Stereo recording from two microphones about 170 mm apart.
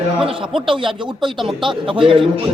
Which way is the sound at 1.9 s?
30° right (ahead or behind).